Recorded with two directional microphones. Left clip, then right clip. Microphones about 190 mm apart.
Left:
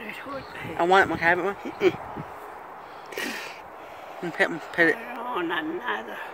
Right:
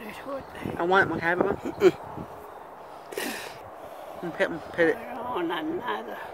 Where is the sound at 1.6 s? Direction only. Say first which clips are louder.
Right 3 dB; 20° right (ahead or behind).